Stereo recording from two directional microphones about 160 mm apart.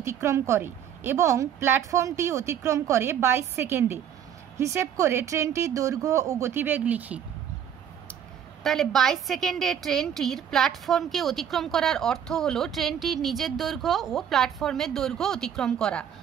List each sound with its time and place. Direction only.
0.0 s a woman's voice: 15° right (ahead or behind)
8.6 s a woman's voice: centre (ahead or behind)